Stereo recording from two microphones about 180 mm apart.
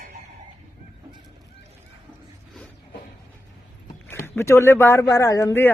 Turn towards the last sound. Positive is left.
turn(degrees=15)  # may be behind; listen again after turning